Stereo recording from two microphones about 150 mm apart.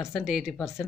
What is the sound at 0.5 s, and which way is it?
Speech, 20° left (ahead or behind).